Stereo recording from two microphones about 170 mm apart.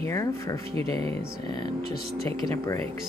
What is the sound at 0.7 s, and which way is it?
Speech, 35° right (ahead or behind).